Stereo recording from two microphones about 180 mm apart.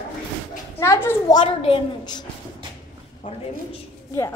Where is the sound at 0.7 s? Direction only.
15° left (ahead or behind).